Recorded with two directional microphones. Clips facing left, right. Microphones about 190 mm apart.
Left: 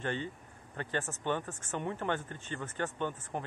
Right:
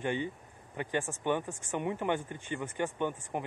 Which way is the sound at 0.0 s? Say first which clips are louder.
Right 3 dB; 15° right (ahead or behind).